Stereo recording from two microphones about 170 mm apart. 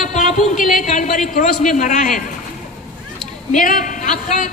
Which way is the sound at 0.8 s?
50° left (ahead or behind).